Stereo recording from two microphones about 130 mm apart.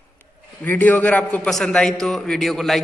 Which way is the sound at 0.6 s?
10° left (ahead or behind).